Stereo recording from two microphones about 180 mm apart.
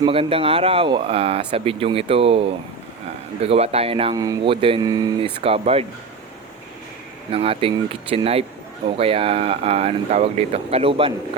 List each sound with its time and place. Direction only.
0.0 s speech: 30° right (ahead or behind)
7.3 s speech: 30° right (ahead or behind)